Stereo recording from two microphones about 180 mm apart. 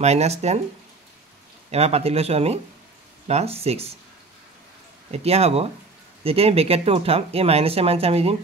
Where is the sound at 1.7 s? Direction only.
35° right (ahead or behind).